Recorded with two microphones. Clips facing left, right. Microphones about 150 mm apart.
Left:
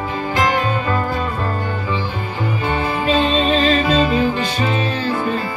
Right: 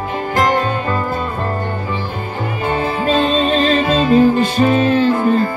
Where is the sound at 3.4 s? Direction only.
40° right (ahead or behind).